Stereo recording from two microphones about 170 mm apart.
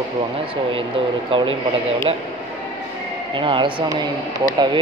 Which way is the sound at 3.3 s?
30° right (ahead or behind).